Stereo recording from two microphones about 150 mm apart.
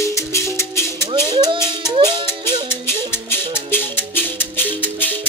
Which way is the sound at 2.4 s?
15° left (ahead or behind).